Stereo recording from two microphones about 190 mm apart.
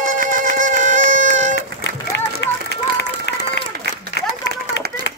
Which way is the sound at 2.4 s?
65° left (ahead or behind).